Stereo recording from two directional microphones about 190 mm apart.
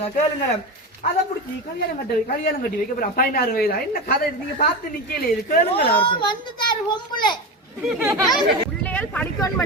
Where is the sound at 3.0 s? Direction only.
50° left (ahead or behind).